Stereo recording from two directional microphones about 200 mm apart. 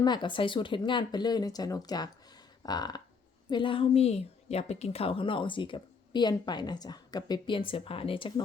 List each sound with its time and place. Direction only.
0.0 s a woman's voice: 20° left (ahead or behind)